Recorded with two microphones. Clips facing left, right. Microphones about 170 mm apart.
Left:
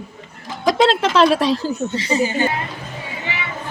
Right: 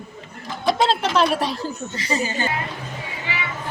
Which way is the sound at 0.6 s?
90° left.